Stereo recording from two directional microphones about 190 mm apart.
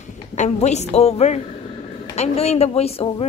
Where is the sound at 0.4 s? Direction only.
35° left (ahead or behind).